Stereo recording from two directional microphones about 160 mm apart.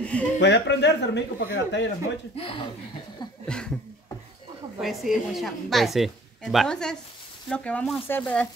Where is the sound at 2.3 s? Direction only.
35° left (ahead or behind).